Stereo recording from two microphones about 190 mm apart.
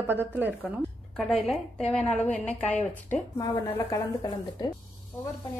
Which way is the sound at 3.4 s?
20° left (ahead or behind).